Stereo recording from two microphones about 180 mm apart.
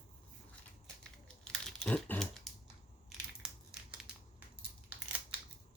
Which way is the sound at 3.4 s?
5° right (ahead or behind).